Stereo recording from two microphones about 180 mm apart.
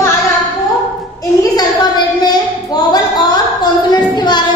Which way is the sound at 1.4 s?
20° left (ahead or behind).